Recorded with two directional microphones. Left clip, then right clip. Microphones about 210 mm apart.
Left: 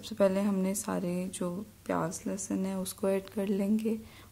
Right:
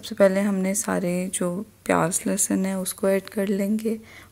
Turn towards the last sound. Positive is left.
turn(degrees=-15)  # may be behind; listen again after turning